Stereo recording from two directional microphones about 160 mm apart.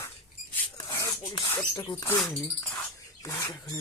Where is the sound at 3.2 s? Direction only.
20° left (ahead or behind).